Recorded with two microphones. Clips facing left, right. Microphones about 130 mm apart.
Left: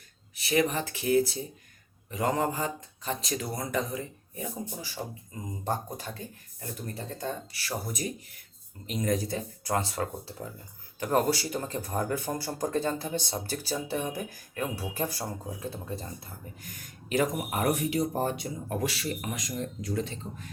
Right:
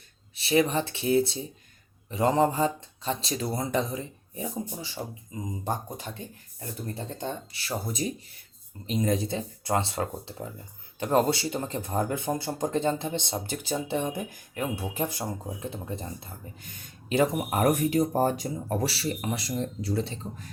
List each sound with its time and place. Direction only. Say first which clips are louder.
0.3 s speech: right 3 dB; 25° right (ahead or behind)
17.6 s speech: right 4 dB; 45° right (ahead or behind); by 20.5 s 30° right (ahead or behind)